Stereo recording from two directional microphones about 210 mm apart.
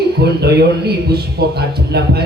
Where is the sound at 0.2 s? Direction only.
50° right (ahead or behind).